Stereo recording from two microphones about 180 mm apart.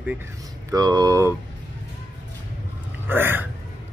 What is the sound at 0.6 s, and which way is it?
Speech, 20° right (ahead or behind).